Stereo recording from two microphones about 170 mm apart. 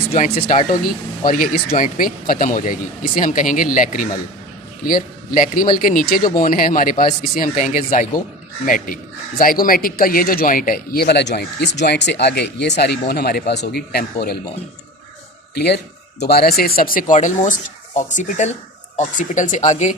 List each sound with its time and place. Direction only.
0.4 s speech: 55° left (ahead or behind); by 14.3 s 70° left (ahead or behind)
15.5 s speech: 75° left (ahead or behind); by 20.0 s 45° left (ahead or behind)